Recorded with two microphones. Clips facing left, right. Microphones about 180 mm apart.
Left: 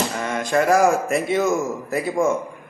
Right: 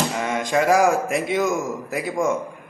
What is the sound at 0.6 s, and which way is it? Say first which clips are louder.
A man's voice: left 1 dB; 10° right (ahead or behind).